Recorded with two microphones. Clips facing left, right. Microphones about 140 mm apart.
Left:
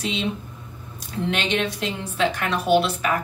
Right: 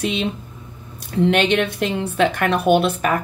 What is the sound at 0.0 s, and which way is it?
Speech, 55° right (ahead or behind).